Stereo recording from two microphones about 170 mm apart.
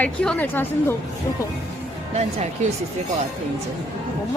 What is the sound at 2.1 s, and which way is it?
Speech, 40° right (ahead or behind).